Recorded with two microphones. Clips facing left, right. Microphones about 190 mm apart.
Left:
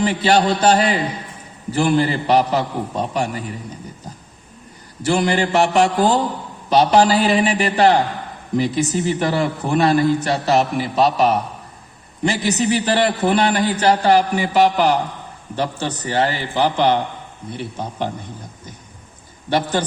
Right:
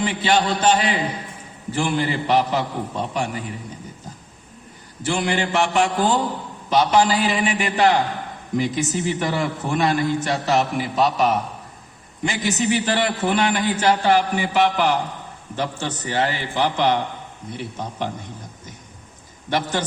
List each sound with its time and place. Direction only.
0.0 s a man's voice: 40° left (ahead or behind)
5.0 s a man's voice: 40° left (ahead or behind)
19.5 s a man's voice: 30° left (ahead or behind)